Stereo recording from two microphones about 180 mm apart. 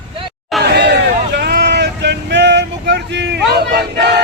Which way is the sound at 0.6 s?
65° right (ahead or behind).